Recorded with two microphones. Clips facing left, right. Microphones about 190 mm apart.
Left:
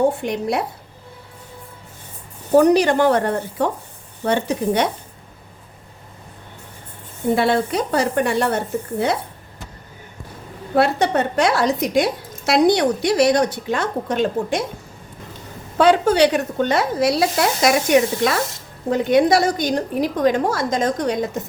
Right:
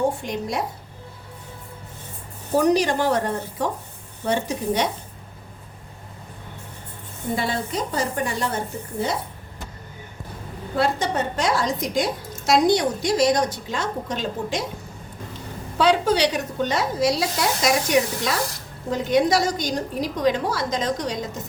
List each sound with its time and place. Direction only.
0.2 s a woman's voice: 60° left (ahead or behind)
2.6 s a woman's voice: 60° left (ahead or behind)
7.3 s speech: 65° left (ahead or behind)
10.8 s a woman's voice: 65° left (ahead or behind)
15.8 s a woman's voice: 50° left (ahead or behind)